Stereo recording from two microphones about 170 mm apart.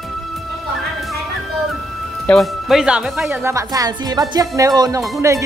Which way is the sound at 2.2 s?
Centre (ahead or behind).